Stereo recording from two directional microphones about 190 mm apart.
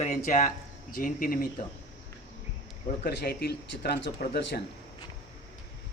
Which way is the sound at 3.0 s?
55° left (ahead or behind).